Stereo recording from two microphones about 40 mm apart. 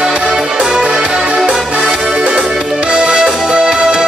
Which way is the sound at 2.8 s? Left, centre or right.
Right.